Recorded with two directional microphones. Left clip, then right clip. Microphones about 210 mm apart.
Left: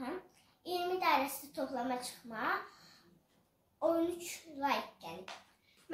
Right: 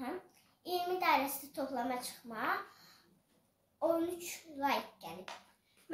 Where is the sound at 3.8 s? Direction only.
15° right (ahead or behind).